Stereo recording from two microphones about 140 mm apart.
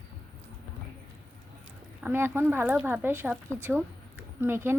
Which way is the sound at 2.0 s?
15° right (ahead or behind).